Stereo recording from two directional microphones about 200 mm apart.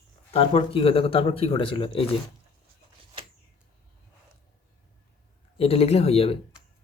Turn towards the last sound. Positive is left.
turn(degrees=30)  # may be behind; listen again after turning